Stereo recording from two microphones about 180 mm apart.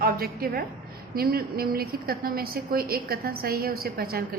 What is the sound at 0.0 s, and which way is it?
A woman's voice, 55° right (ahead or behind).